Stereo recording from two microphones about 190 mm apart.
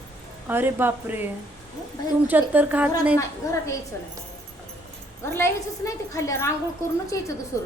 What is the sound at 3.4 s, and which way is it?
Speech, 15° left (ahead or behind).